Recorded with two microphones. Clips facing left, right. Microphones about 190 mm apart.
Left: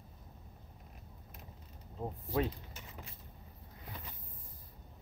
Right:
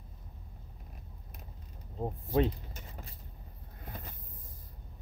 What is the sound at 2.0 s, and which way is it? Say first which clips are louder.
Speech: right 5 dB; 25° right (ahead or behind).